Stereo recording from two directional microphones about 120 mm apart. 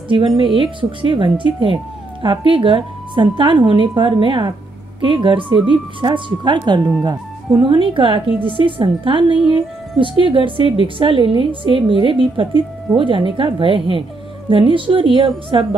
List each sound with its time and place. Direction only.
0.6 s a woman's voice: 45° right (ahead or behind)